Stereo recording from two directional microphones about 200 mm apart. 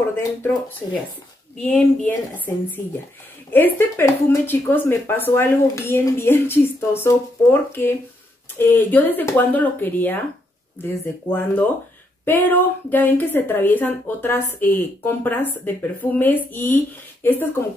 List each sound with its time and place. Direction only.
0.4 s speech: 10° left (ahead or behind)
8.5 s speech: 10° left (ahead or behind)